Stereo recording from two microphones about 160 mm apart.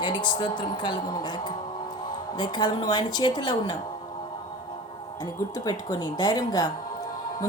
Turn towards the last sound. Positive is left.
turn(degrees=25)  # may be behind; listen again after turning